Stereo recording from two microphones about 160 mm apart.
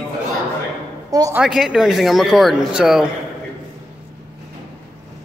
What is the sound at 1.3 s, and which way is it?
Speech, 5° right (ahead or behind).